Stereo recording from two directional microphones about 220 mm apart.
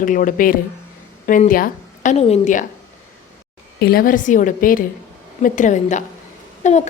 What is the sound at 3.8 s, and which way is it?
A woman's voice, 45° left (ahead or behind).